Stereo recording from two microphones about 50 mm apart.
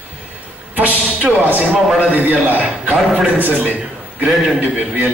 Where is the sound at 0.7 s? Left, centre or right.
Right.